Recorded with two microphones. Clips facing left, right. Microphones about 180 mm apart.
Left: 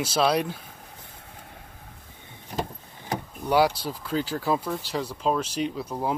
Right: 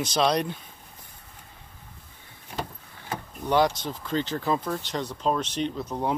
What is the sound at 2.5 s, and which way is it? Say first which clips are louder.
Vehicle: left 3 dB; 40° left (ahead or behind).